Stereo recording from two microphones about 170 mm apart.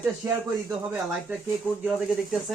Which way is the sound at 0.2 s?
15° right (ahead or behind).